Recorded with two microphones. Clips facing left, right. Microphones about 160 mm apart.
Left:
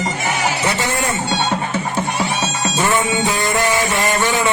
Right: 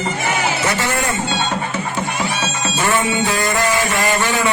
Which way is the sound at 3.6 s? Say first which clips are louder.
Even; 20° left (ahead or behind).